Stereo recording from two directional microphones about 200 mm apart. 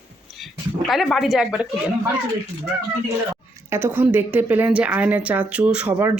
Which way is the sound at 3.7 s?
10° right (ahead or behind).